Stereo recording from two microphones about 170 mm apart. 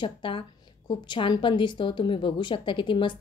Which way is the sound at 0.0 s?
30° left (ahead or behind).